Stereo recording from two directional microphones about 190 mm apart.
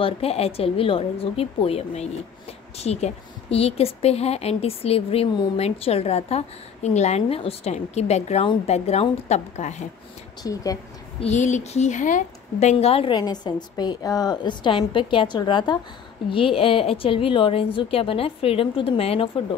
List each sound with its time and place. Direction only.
0.0 s a woman's voice: 30° left (ahead or behind)
10.4 s a woman's voice: 20° left (ahead or behind)
11.1 s a woman's voice: 35° left (ahead or behind)